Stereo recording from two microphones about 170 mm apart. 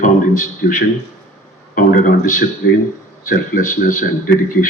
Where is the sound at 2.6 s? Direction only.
70° left (ahead or behind).